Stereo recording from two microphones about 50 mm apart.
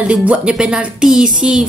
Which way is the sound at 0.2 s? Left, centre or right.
Right.